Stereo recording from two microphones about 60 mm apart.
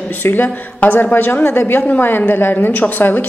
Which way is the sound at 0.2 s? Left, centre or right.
Left.